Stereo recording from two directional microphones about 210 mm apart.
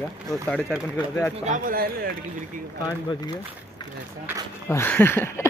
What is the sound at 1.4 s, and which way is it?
Speech, 40° right (ahead or behind).